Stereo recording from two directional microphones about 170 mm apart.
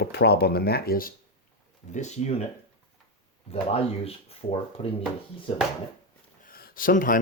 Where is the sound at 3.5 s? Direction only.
35° left (ahead or behind).